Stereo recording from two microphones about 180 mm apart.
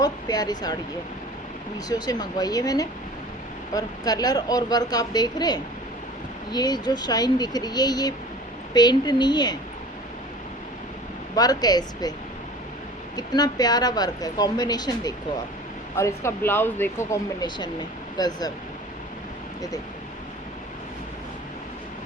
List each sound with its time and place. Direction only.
0.0 s speech: 20° left (ahead or behind)
1.9 s speech: 20° left (ahead or behind)
11.3 s speech: 20° left (ahead or behind)
13.1 s speech: 20° left (ahead or behind)